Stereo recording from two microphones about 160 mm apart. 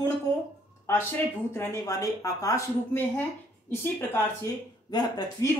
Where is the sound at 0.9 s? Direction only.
15° left (ahead or behind).